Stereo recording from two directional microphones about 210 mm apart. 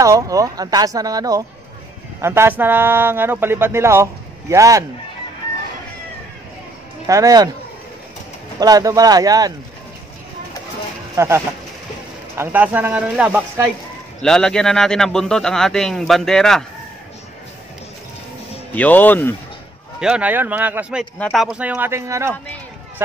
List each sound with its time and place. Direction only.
0.0 s speech: 15° right (ahead or behind)
7.1 s speech: 15° right (ahead or behind)
8.5 s speech: 20° right (ahead or behind)
11.1 s speech: 10° right (ahead or behind)
14.2 s speech: 5° left (ahead or behind)
18.8 s speech: 10° left (ahead or behind)
20.0 s speech: 5° right (ahead or behind)